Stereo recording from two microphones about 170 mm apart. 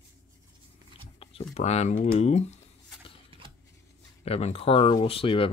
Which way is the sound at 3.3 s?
30° right (ahead or behind).